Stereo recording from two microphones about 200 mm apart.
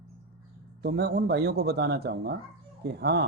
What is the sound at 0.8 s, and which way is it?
Speech, 55° right (ahead or behind).